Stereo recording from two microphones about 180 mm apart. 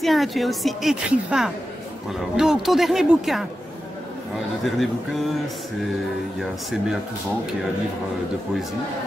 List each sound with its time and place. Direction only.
0.0 s a woman's voice: centre (ahead or behind)
4.6 s a woman's voice: centre (ahead or behind)